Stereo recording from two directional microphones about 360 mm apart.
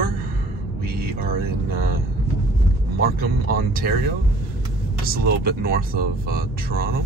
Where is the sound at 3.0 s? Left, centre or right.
Right.